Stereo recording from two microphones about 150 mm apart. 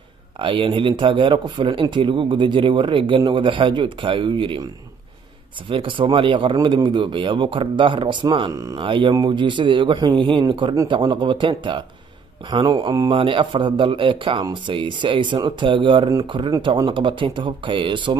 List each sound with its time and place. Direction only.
0.4 s speech: 35° right (ahead or behind)
5.7 s speech: 35° right (ahead or behind)